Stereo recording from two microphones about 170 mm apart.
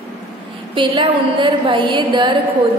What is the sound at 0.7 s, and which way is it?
A woman's voice, 30° right (ahead or behind).